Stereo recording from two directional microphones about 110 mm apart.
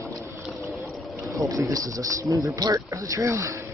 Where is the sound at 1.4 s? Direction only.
30° right (ahead or behind).